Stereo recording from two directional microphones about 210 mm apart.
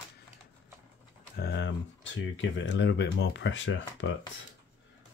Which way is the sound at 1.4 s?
55° left (ahead or behind).